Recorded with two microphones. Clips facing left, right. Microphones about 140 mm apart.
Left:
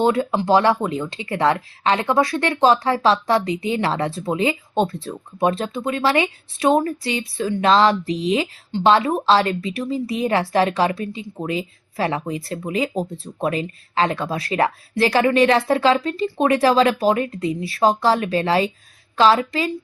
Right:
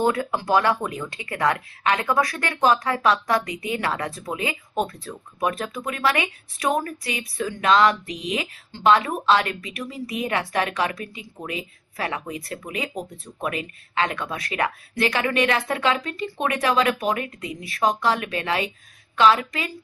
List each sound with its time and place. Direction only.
0.0 s a woman's voice: 25° left (ahead or behind)